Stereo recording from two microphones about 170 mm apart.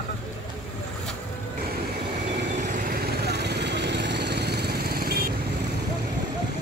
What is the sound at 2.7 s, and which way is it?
Vehicle, 55° right (ahead or behind).